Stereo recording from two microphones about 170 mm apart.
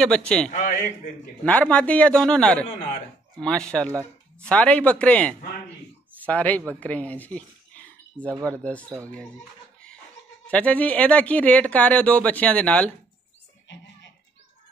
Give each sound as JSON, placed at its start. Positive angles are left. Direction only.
{"t": 0.0, "sound": "speech", "side_deg": 5}
{"t": 0.5, "sound": "a sound", "side_deg": 45}
{"t": 1.4, "sound": "speech", "side_deg": 5}
{"t": 8.2, "sound": "speech", "side_deg": -15}
{"t": 8.5, "sound": "speech", "side_deg": 10}
{"t": 10.4, "sound": "speech", "side_deg": 10}